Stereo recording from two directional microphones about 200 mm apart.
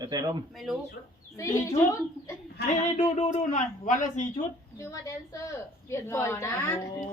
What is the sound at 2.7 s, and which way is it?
Speech, 35° left (ahead or behind).